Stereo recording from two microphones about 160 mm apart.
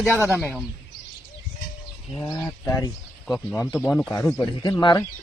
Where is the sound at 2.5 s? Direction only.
20° left (ahead or behind).